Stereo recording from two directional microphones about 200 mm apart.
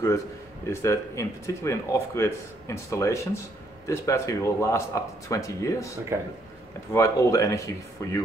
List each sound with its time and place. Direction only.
0.7 s speech: 15° left (ahead or behind)